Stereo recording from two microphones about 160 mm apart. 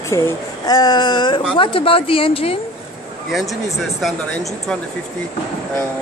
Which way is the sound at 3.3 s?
Centre (ahead or behind).